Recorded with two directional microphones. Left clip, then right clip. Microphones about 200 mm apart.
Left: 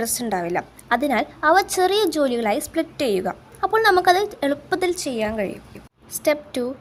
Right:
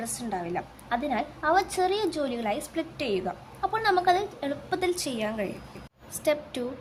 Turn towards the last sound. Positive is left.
turn(degrees=25)  # may be behind; listen again after turning